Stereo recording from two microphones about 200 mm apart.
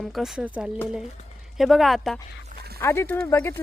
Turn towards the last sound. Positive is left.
turn(degrees=15)  # may be behind; listen again after turning